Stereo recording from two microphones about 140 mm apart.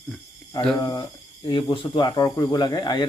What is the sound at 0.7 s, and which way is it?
Speech, 30° left (ahead or behind).